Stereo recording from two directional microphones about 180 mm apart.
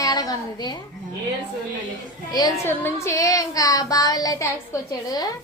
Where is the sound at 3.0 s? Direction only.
15° left (ahead or behind).